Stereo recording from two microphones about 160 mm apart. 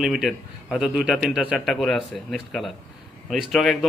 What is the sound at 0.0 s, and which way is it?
A man's voice, centre (ahead or behind).